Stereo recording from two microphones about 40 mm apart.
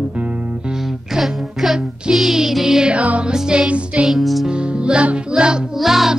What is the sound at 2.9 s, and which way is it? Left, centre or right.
Music, right.